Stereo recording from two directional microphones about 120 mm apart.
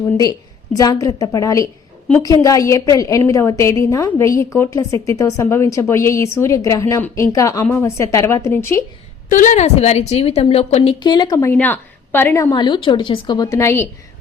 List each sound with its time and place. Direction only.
0.0 s a woman's voice: 30° left (ahead or behind)
9.3 s a woman's voice: 90° left; by 10.9 s 60° left (ahead or behind)
11.0 s speech: 35° left (ahead or behind)
11.5 s a woman's voice: 15° left (ahead or behind)